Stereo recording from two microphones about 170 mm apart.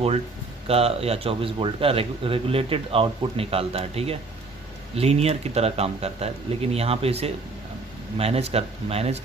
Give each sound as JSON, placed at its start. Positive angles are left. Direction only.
{"t": 0.7, "sound": "speech", "side_deg": -35}